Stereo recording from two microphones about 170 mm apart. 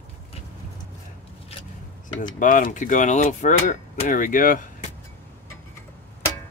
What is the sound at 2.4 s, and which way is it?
Speech, 55° left (ahead or behind).